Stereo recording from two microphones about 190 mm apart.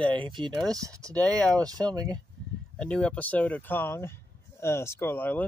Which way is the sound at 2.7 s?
5° left (ahead or behind).